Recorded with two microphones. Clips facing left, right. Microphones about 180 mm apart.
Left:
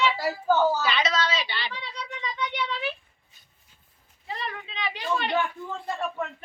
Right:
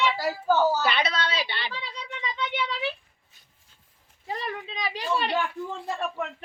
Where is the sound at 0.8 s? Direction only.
60° right (ahead or behind).